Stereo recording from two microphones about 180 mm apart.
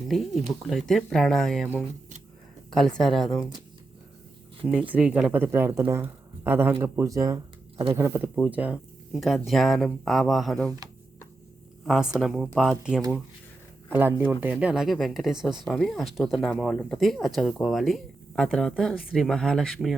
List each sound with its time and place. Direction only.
0.1 s a woman's voice: centre (ahead or behind)
4.7 s speech: 5° right (ahead or behind)
11.9 s speech: 5° right (ahead or behind)